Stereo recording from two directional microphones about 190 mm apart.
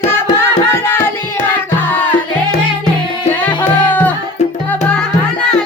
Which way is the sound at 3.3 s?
10° left (ahead or behind).